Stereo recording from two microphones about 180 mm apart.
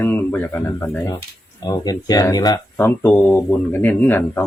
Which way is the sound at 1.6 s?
20° left (ahead or behind).